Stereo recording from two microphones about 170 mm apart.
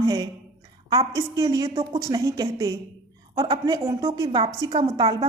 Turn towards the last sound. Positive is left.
turn(degrees=-30)  # may be behind; listen again after turning